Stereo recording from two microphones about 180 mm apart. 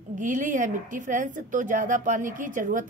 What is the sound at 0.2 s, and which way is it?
A woman's voice, 45° right (ahead or behind).